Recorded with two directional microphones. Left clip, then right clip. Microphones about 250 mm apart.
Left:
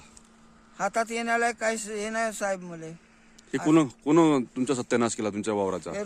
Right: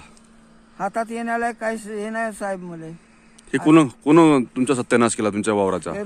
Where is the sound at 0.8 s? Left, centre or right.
Centre.